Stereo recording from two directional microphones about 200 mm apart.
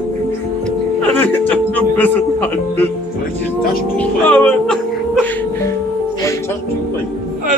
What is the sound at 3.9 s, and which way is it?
Speech, 5° left (ahead or behind).